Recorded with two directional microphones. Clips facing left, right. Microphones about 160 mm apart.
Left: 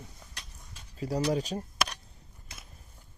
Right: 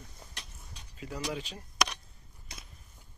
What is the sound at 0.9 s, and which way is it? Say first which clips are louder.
Speech: left 8 dB; 35° left (ahead or behind).